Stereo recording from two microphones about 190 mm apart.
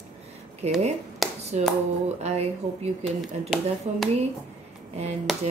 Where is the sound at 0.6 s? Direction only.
35° right (ahead or behind).